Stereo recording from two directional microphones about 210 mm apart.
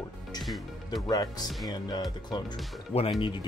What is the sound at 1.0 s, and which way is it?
Speech, 20° left (ahead or behind).